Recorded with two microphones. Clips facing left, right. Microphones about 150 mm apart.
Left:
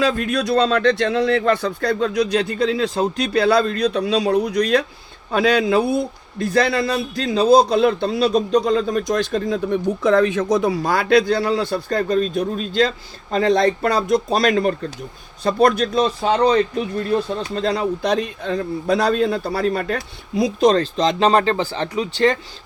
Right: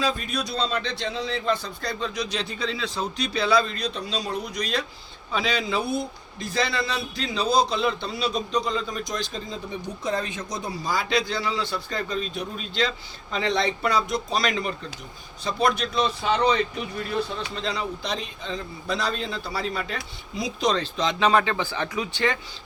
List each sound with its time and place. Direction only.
0.0 s a man's voice: 70° left (ahead or behind); by 21.8 s 35° left (ahead or behind)